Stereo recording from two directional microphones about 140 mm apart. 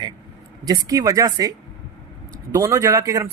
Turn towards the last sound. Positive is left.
turn(degrees=-25)  # may be behind; listen again after turning